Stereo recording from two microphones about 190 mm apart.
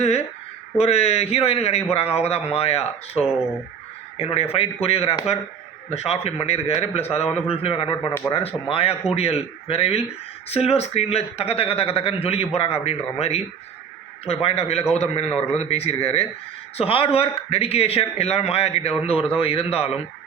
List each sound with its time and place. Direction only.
0.0 s a man's voice: 35° left (ahead or behind)